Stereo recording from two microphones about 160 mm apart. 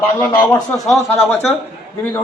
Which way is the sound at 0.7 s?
Centre (ahead or behind).